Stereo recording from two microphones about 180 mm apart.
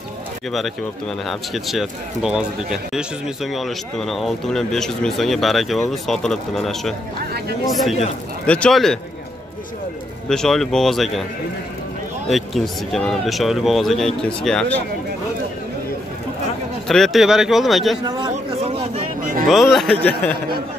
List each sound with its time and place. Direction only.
1.2 s speech: centre (ahead or behind)
7.2 s speech: 60° right (ahead or behind)
8.5 s speech: 5° left (ahead or behind)
10.2 s speech: 5° left (ahead or behind)
12.3 s speech: centre (ahead or behind)
16.8 s speech: centre (ahead or behind)
18.3 s a sound: 35° right (ahead or behind)
19.5 s speech: centre (ahead or behind)